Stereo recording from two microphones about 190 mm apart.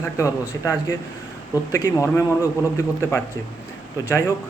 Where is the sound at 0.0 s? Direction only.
15° left (ahead or behind).